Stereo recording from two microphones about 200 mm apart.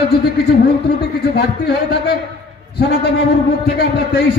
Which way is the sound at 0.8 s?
55° left (ahead or behind).